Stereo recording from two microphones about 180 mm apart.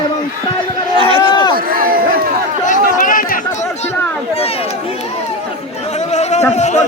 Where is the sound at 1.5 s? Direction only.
55° right (ahead or behind).